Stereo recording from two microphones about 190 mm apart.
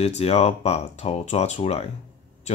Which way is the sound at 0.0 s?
35° left (ahead or behind).